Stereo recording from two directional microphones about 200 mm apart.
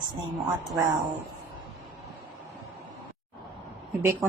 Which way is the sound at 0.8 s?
15° right (ahead or behind).